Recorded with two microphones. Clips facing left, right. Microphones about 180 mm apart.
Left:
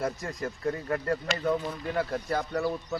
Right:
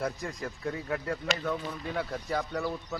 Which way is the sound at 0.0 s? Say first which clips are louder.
Left 2 dB; centre (ahead or behind).